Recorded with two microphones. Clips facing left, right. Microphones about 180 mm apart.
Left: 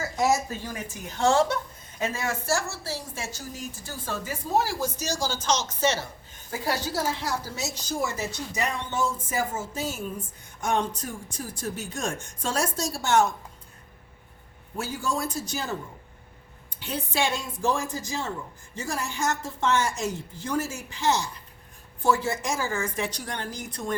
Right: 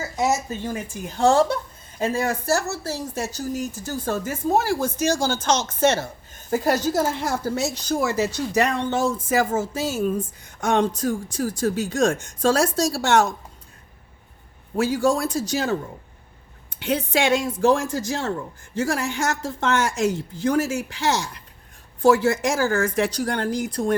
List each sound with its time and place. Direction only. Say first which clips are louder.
0.6 s a woman's voice: right 6 dB; 30° right (ahead or behind); by 13.2 s 80° right
14.8 s a woman's voice: right 9 dB; 80° right